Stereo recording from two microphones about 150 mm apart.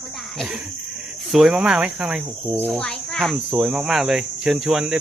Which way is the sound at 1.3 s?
Centre (ahead or behind).